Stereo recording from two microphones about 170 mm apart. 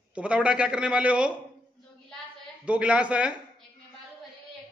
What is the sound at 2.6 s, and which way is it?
Speech, 5° right (ahead or behind).